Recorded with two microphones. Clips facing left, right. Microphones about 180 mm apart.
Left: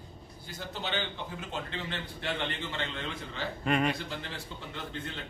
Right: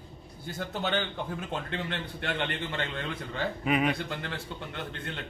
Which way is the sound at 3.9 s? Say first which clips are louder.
Right 4 dB; 55° right (ahead or behind).